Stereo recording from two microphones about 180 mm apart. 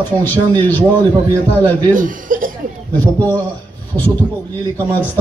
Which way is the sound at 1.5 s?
10° left (ahead or behind).